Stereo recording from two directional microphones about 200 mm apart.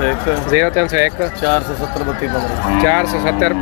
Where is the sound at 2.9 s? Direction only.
15° right (ahead or behind).